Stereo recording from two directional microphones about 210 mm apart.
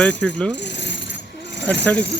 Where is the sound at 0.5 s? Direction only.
55° left (ahead or behind).